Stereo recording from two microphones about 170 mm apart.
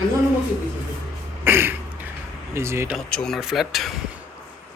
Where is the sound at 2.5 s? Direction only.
15° right (ahead or behind).